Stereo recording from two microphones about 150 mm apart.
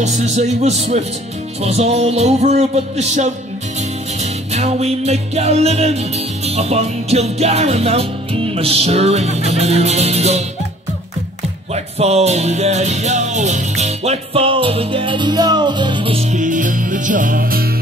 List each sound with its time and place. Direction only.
0.0 s music: 50° right (ahead or behind)
11.7 s music: 45° right (ahead or behind)
16.3 s music: 60° right (ahead or behind); by 17.7 s 85° right